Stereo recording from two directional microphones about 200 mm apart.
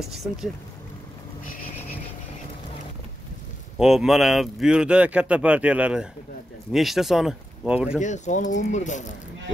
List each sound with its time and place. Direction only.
0.1 s speech: centre (ahead or behind)
3.7 s speech: centre (ahead or behind)
8.0 s speech: 35° left (ahead or behind)